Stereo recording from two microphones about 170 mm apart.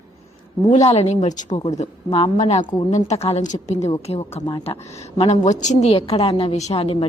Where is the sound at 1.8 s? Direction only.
35° left (ahead or behind).